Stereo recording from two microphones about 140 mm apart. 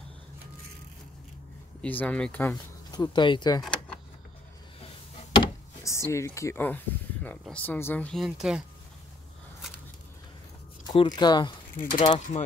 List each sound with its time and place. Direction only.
1.8 s speech: 10° left (ahead or behind)
2.9 s speech: 30° left (ahead or behind)
3.6 s a sound: 5° left (ahead or behind)
5.4 s door: 20° left (ahead or behind)
7.4 s speech: 10° left (ahead or behind)
8.2 s speech: 5° right (ahead or behind)
10.9 s speech: 30° left (ahead or behind)
11.7 s speech: 75° left (ahead or behind)
12.0 s speech: 40° left (ahead or behind)